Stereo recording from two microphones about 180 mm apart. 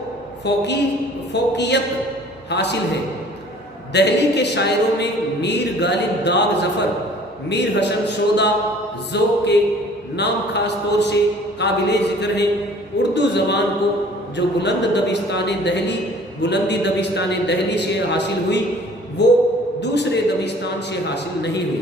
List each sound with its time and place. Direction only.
0.4 s speech: 70° left (ahead or behind)
3.9 s a man's voice: 70° left (ahead or behind)